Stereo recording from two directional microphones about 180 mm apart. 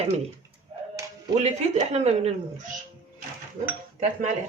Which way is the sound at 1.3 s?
40° right (ahead or behind).